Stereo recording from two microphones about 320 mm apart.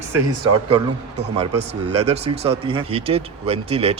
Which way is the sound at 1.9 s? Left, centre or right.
Centre.